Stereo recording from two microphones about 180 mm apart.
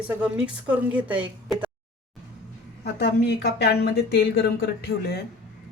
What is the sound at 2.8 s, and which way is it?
Speech, 65° left (ahead or behind).